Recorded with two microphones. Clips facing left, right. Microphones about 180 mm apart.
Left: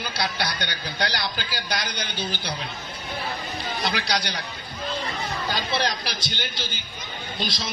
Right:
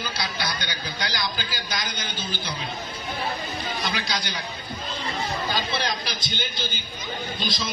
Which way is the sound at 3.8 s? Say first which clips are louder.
Left 5 dB; 65° left (ahead or behind).